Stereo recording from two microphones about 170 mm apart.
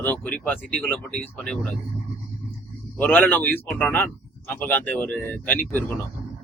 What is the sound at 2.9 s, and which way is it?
Speech, 10° left (ahead or behind).